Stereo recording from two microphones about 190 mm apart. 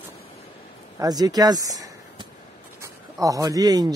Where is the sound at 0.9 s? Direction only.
20° right (ahead or behind).